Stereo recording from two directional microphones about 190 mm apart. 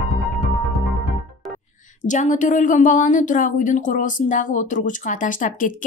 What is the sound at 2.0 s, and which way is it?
Speech, 40° left (ahead or behind).